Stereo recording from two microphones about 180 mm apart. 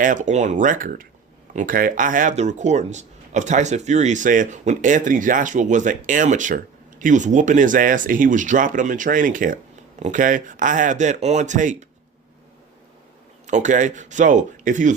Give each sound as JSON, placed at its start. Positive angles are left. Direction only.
{"t": 0.0, "sound": "speech", "side_deg": -45}
{"t": 13.5, "sound": "speech", "side_deg": -45}